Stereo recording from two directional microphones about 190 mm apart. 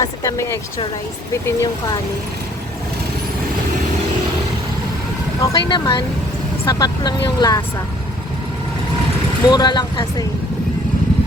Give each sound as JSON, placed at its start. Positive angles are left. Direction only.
{"t": 0.0, "sound": "a sound", "side_deg": 15}
{"t": 1.3, "sound": "speech", "side_deg": 15}
{"t": 5.4, "sound": "speech", "side_deg": 20}
{"t": 9.5, "sound": "speech", "side_deg": 20}